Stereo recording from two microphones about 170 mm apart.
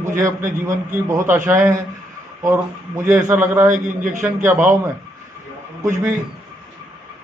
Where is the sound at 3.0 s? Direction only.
15° right (ahead or behind).